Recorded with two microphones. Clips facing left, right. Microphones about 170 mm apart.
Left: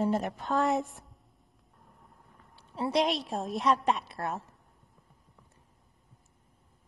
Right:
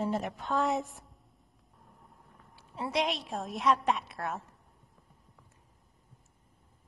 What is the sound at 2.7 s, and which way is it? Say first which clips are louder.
Speech: left 4 dB; 35° left (ahead or behind).